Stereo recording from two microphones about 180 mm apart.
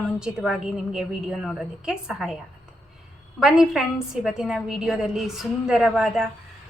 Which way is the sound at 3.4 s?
5° right (ahead or behind).